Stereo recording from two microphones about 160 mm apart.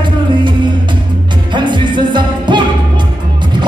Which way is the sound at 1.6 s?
30° right (ahead or behind).